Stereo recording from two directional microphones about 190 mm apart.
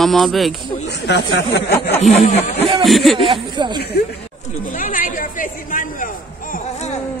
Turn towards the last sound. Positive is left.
turn(degrees=45)  # may be behind; listen again after turning